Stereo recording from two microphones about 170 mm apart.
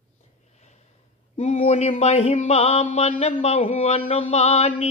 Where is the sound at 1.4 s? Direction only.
40° left (ahead or behind).